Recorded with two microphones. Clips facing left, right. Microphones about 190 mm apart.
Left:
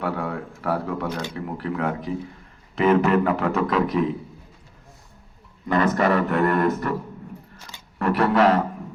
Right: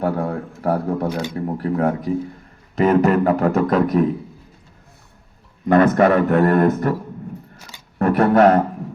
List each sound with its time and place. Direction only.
0.0 s speech: 40° right (ahead or behind)
5.6 s a man's voice: 50° right (ahead or behind)
7.9 s speech: 45° right (ahead or behind)